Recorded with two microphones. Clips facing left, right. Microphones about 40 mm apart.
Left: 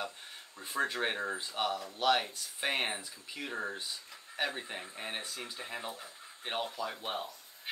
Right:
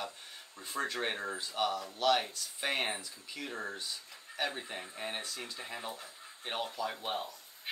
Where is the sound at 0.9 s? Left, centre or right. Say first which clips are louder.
Left 2 dB; centre.